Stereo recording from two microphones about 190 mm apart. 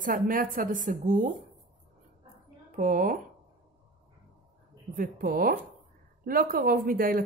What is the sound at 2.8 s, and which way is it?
Speech, 45° right (ahead or behind).